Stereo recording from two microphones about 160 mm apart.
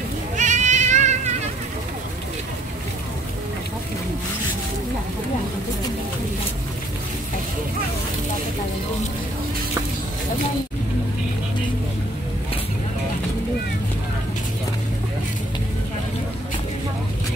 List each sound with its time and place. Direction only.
0.4 s cat: 50° right (ahead or behind)